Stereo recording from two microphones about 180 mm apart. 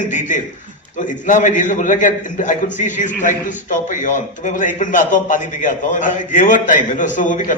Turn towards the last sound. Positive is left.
turn(degrees=45)  # may be behind; listen again after turning